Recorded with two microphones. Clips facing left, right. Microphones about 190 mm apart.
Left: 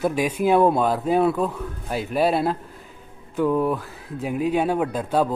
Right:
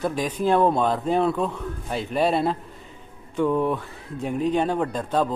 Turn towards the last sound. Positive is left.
turn(degrees=5)  # may be behind; listen again after turning